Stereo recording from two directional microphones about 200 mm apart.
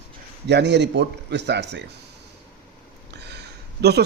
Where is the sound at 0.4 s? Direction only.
60° right (ahead or behind).